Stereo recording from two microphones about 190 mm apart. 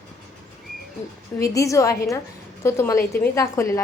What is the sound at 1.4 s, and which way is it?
A woman's voice, 15° left (ahead or behind).